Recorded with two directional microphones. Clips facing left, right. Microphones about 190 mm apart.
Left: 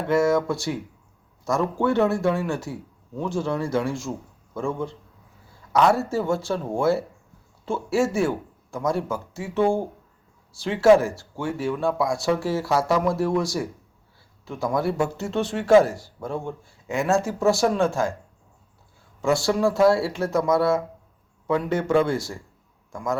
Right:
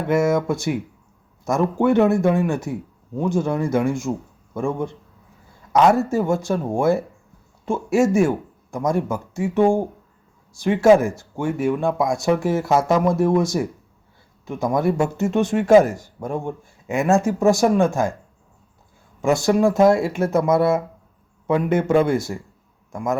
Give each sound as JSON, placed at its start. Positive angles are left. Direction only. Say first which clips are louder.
{"t": 0.1, "sound": "speech", "louder": "right 1 dB", "side_deg": -20}
{"t": 4.1, "sound": "speech", "louder": "right 6 dB", "side_deg": -30}
{"t": 4.5, "sound": "speech", "louder": "right 4 dB", "side_deg": -15}
{"t": 19.2, "sound": "a man's voice", "louder": "right 4 dB", "side_deg": -20}